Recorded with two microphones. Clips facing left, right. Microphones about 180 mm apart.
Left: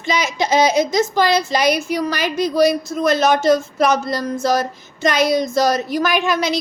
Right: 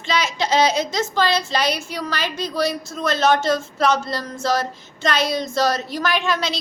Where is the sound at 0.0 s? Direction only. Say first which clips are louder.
Left 3 dB; 15° left (ahead or behind).